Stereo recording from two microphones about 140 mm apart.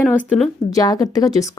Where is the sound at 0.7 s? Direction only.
25° left (ahead or behind).